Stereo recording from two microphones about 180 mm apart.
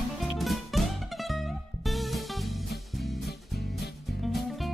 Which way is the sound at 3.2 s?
60° left (ahead or behind).